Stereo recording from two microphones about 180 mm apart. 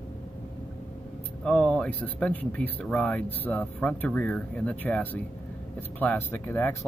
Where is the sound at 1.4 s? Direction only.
5° left (ahead or behind).